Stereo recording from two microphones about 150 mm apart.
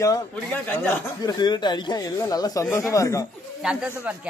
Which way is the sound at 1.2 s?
25° left (ahead or behind).